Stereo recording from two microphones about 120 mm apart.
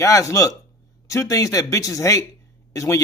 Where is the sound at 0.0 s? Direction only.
25° left (ahead or behind).